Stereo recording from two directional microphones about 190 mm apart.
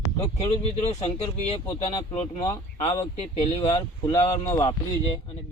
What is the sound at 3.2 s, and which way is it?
Speech, 30° left (ahead or behind).